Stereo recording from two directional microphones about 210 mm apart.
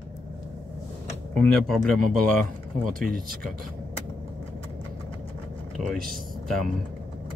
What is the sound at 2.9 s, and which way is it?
Speech, 40° right (ahead or behind).